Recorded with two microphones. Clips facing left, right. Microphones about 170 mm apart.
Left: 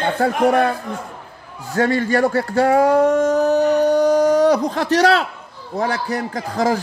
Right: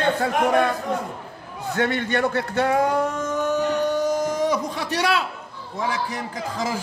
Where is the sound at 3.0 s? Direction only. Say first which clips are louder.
Left 10 dB; 65° left (ahead or behind).